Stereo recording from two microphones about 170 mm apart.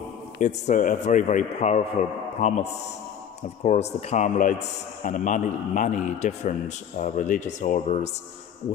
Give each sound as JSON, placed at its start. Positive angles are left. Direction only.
{"t": 0.4, "sound": "a man's voice", "side_deg": 45}